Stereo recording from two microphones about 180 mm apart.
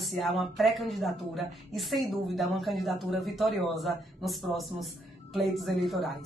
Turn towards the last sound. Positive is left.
turn(degrees=0)  # may be behind; listen again after turning